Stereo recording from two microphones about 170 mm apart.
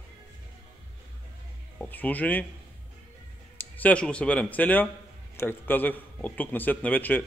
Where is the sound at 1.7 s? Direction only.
10° left (ahead or behind).